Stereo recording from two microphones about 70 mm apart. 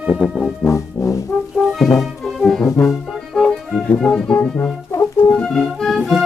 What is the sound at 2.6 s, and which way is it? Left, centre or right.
Brass instrument, left.